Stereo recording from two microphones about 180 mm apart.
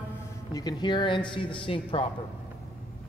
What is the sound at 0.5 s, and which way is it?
Speech, 25° left (ahead or behind).